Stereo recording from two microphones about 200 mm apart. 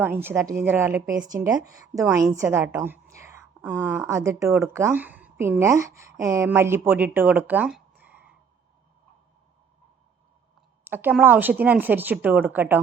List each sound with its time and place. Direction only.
0.0 s a woman's voice: 10° right (ahead or behind)
10.8 s speech: 10° right (ahead or behind)